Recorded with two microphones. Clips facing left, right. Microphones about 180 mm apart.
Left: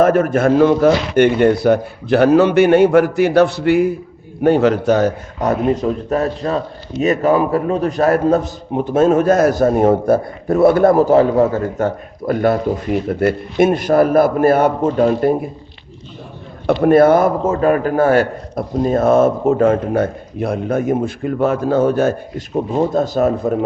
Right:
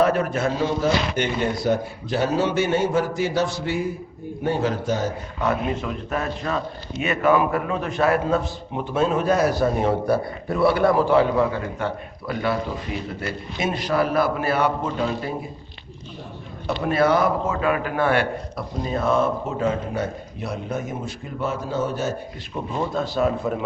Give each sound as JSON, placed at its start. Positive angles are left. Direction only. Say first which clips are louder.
{"t": 0.0, "sound": "a man's voice", "louder": "left 7 dB", "side_deg": 50}
{"t": 5.4, "sound": "a man's voice", "louder": "left 8 dB", "side_deg": 40}
{"t": 16.6, "sound": "a man's voice", "louder": "left 10 dB", "side_deg": 55}
{"t": 22.5, "sound": "a man's voice", "louder": "left 9 dB", "side_deg": 40}